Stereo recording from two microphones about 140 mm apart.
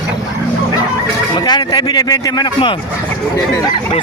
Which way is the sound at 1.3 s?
30° left (ahead or behind).